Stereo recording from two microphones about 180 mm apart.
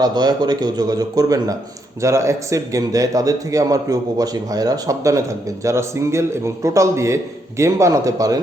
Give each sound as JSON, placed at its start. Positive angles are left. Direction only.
{"t": 0.0, "sound": "a man's voice", "side_deg": -20}